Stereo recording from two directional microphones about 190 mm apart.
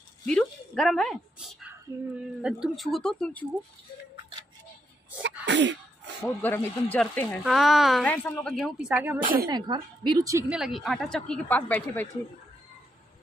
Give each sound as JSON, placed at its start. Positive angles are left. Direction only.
{"t": 0.3, "sound": "a woman's voice", "side_deg": 5}
{"t": 5.2, "sound": "sneeze", "side_deg": -70}
{"t": 6.2, "sound": "speech", "side_deg": 10}
{"t": 9.2, "sound": "speech", "side_deg": -50}
{"t": 9.7, "sound": "a woman's voice", "side_deg": -20}
{"t": 10.5, "sound": "speech", "side_deg": 0}